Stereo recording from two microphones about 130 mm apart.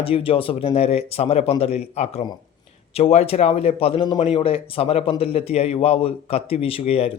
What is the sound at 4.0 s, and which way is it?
Speech, 35° left (ahead or behind).